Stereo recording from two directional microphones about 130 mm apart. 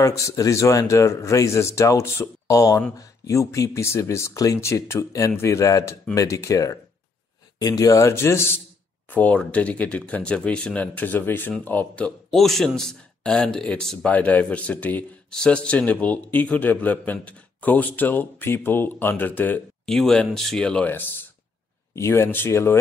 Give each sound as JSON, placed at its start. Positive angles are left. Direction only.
{"t": 0.0, "sound": "speech", "side_deg": 25}
{"t": 12.4, "sound": "speech", "side_deg": 0}